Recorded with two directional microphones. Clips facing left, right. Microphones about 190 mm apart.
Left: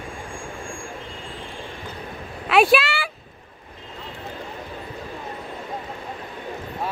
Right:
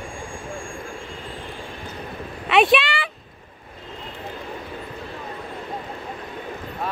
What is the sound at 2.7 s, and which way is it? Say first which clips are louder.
Speech: even; 5° left (ahead or behind).